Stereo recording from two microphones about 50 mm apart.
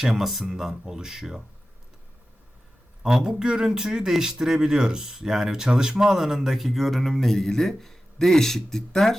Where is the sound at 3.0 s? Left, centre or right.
Centre.